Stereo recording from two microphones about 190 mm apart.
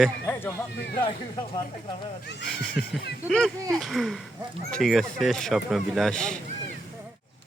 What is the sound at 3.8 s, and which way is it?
Speech, centre (ahead or behind).